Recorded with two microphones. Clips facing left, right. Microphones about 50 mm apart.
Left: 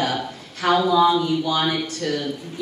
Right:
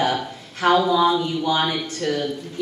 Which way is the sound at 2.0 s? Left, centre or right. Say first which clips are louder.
Right 2 dB; right.